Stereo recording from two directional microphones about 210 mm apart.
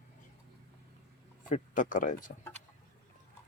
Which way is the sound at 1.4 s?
40° left (ahead or behind).